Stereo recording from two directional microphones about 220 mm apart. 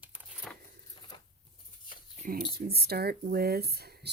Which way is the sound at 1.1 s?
20° left (ahead or behind).